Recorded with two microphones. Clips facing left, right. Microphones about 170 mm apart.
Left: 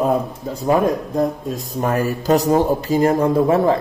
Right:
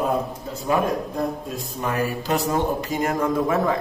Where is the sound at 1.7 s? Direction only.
45° left (ahead or behind).